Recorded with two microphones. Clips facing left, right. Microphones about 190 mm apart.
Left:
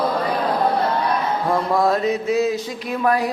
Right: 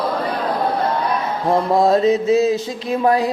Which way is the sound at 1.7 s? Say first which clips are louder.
Right 6 dB; 25° right (ahead or behind).